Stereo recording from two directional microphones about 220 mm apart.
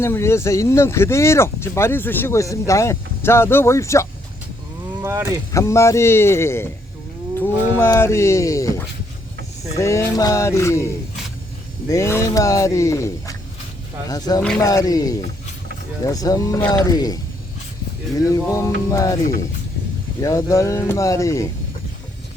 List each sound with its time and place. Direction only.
0.0 s speech: 10° left (ahead or behind)
5.0 s speech: 10° right (ahead or behind)
5.5 s speech: 15° left (ahead or behind)
7.8 s speech: 10° left (ahead or behind)
11.9 s speech: 15° left (ahead or behind)
18.2 s speech: 15° left (ahead or behind)
20.2 s speech: 15° left (ahead or behind)